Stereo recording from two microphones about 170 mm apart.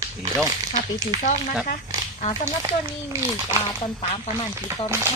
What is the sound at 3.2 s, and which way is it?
Speech, 15° right (ahead or behind).